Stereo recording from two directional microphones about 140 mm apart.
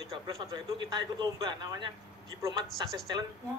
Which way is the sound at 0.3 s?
30° right (ahead or behind).